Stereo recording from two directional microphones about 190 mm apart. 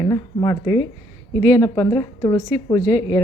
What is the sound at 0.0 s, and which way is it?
Speech, 20° left (ahead or behind).